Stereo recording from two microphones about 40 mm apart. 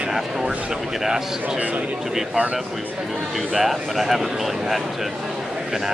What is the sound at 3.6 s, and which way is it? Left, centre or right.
Speech, centre.